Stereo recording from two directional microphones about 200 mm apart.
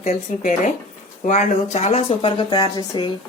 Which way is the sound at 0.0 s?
35° left (ahead or behind).